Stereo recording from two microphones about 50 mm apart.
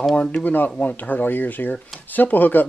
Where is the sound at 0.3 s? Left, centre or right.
Left.